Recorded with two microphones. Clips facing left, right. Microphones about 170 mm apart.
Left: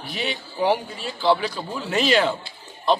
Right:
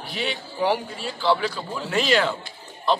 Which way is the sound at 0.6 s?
20° left (ahead or behind).